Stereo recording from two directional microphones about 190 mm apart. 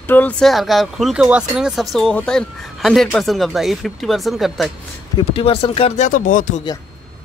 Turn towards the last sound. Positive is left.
turn(degrees=45)  # may be behind; listen again after turning